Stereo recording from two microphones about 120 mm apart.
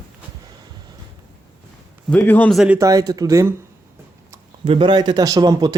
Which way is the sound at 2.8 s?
30° right (ahead or behind).